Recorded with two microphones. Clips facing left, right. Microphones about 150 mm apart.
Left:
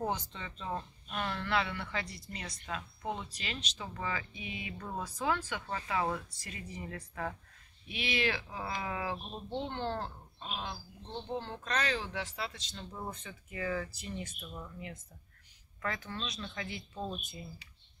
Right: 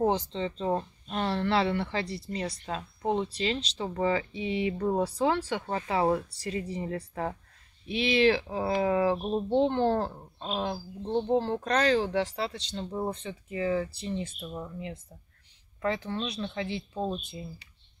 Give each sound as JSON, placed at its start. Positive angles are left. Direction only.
{"t": 0.0, "sound": "speech", "side_deg": -30}